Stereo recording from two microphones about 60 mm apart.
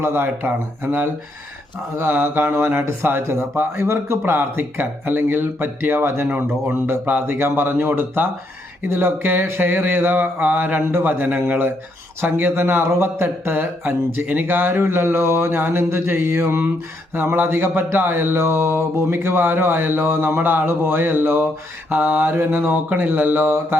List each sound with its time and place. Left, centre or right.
0.0 s mantra: right
2.0 s mantra: right
7.3 s mantra: right